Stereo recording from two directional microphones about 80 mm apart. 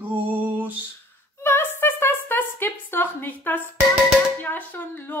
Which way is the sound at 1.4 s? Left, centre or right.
Left.